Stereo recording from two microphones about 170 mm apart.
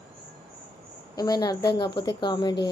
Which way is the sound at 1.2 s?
25° left (ahead or behind).